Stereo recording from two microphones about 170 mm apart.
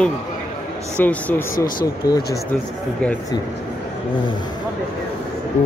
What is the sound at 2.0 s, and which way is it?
Speech, 25° left (ahead or behind).